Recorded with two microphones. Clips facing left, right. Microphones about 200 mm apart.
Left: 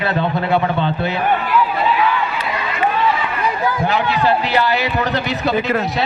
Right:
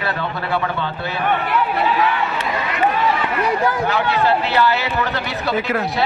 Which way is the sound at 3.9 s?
15° left (ahead or behind).